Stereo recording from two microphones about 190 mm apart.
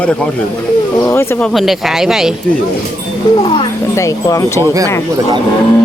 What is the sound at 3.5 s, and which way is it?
Speech, 20° left (ahead or behind).